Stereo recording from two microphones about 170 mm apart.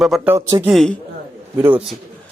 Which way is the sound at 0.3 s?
15° right (ahead or behind).